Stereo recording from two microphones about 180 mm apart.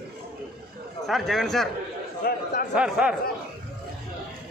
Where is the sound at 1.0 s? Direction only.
Centre (ahead or behind).